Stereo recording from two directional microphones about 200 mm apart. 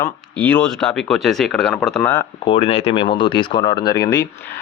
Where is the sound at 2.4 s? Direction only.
30° left (ahead or behind).